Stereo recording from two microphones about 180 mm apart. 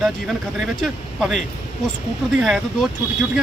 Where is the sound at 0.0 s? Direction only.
Centre (ahead or behind).